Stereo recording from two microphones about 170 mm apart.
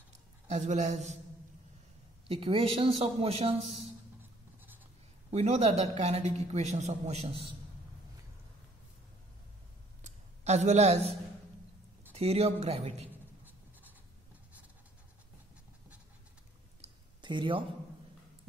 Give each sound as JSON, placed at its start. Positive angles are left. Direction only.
{"t": 0.5, "sound": "speech", "side_deg": -45}
{"t": 2.2, "sound": "a man's voice", "side_deg": -35}
{"t": 4.2, "sound": "writing", "side_deg": -10}
{"t": 5.3, "sound": "a man's voice", "side_deg": -40}
{"t": 10.0, "sound": "a man's voice", "side_deg": -40}
{"t": 16.8, "sound": "a sound", "side_deg": -25}